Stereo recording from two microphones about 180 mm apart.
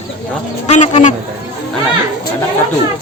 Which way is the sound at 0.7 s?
40° left (ahead or behind).